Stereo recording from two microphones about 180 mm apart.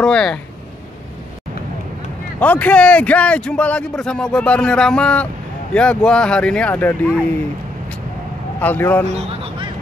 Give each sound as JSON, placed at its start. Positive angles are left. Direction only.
{"t": 0.0, "sound": "speech", "side_deg": 5}
{"t": 2.4, "sound": "a man's voice", "side_deg": 10}
{"t": 8.5, "sound": "a man's voice", "side_deg": 10}
{"t": 9.0, "sound": "a sound", "side_deg": -35}